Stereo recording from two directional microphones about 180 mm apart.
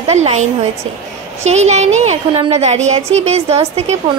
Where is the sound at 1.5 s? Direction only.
40° right (ahead or behind).